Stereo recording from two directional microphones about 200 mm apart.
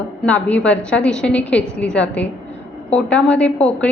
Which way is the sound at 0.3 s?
5° left (ahead or behind).